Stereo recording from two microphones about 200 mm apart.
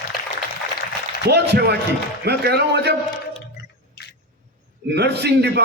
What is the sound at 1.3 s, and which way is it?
A man's voice, 55° right (ahead or behind).